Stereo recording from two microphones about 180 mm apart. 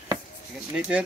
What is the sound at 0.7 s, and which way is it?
Speech, 5° right (ahead or behind).